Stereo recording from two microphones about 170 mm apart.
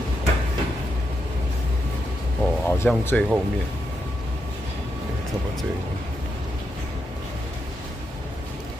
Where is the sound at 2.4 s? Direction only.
10° left (ahead or behind).